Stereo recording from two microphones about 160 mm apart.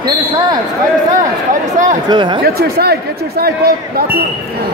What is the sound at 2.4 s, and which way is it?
Speech, 75° right (ahead or behind).